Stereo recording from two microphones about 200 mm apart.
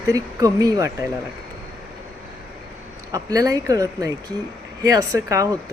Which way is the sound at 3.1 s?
15° right (ahead or behind).